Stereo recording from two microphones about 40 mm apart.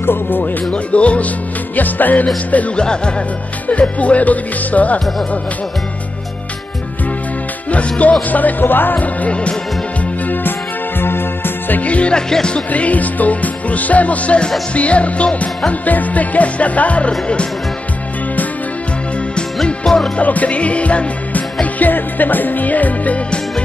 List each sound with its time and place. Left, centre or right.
0.0 s music: left
0.7 s music: left
1.8 s music: left
2.7 s speech: left
3.6 s music: left
7.7 s music: left
9.0 s music: left
11.0 s music: left
11.8 s music: left
12.3 s speech: centre
12.7 s music: left
19.3 s music: centre
20.2 s music: left